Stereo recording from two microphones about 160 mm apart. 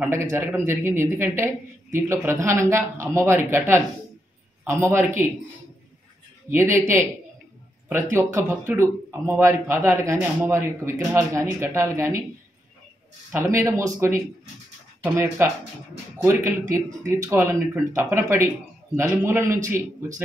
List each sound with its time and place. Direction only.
0.0 s a man's voice: 15° right (ahead or behind)
6.5 s a man's voice: 15° right (ahead or behind)
7.9 s a man's voice: 15° right (ahead or behind)
13.3 s a man's voice: 15° right (ahead or behind)